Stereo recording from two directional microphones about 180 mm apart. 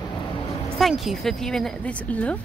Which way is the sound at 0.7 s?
Centre (ahead or behind).